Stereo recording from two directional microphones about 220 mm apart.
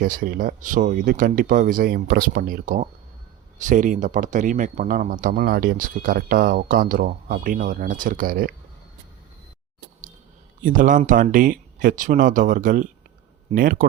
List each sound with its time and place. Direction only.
0.0 s speech: 40° right (ahead or behind)
10.6 s speech: 35° right (ahead or behind)